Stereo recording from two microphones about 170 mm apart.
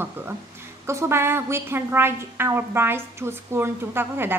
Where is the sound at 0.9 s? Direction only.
15° right (ahead or behind).